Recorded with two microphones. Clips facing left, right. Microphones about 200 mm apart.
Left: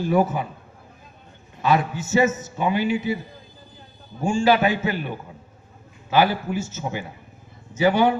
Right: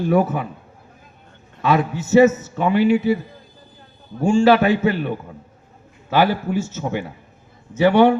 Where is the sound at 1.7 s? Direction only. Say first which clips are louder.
Right 5 dB; 60° right (ahead or behind).